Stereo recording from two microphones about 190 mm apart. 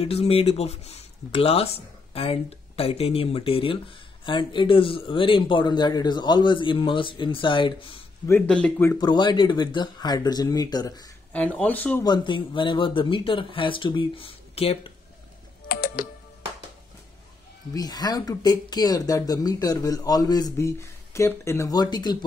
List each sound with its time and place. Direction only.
0.0 s speech: 30° left (ahead or behind)
8.3 s speech: 5° left (ahead or behind)
8.9 s speech: 20° left (ahead or behind)
11.3 s speech: 5° left (ahead or behind)
12.0 s speech: 25° left (ahead or behind)
15.7 s typing: 50° left (ahead or behind)
17.7 s speech: 20° left (ahead or behind)